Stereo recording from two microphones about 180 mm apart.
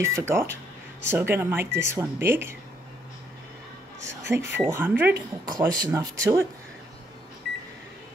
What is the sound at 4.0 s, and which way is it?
Speech, 15° right (ahead or behind).